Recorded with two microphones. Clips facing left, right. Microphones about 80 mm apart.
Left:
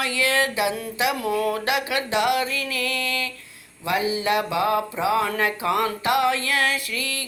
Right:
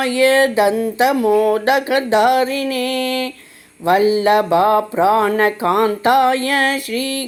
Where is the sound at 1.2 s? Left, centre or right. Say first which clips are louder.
Right 9 dB; right.